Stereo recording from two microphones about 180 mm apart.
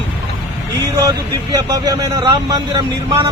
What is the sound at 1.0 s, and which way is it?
Speech, 20° right (ahead or behind).